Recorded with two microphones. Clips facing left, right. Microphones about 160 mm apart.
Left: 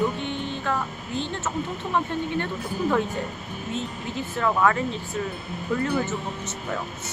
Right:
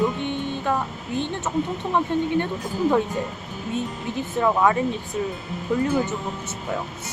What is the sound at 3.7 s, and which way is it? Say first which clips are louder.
Speech: right 4 dB; 15° right (ahead or behind).